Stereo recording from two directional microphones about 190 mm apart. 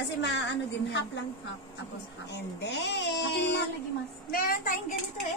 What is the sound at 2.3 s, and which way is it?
Speech, 65° left (ahead or behind).